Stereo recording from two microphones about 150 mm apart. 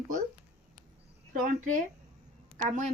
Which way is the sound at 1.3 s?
65° right (ahead or behind).